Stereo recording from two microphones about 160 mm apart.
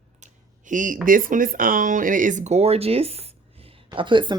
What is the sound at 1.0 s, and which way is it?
Speech, 60° right (ahead or behind).